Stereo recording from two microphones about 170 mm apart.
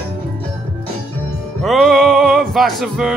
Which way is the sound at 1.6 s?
Centre (ahead or behind).